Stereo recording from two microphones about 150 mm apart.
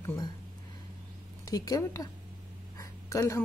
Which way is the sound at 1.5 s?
25° left (ahead or behind).